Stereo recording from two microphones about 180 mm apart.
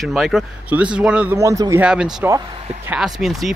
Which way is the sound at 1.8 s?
5° right (ahead or behind).